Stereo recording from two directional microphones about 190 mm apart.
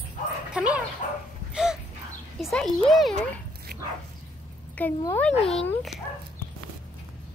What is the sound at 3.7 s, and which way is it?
Bow-wow, 50° right (ahead or behind).